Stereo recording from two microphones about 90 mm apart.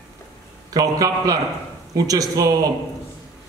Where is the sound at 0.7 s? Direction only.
40° right (ahead or behind).